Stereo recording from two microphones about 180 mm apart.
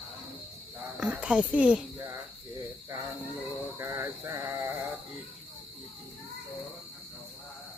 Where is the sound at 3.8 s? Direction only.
15° right (ahead or behind).